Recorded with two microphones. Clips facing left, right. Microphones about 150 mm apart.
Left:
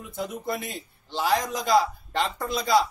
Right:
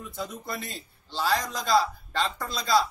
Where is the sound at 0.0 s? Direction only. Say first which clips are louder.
Left 4 dB; 20° left (ahead or behind).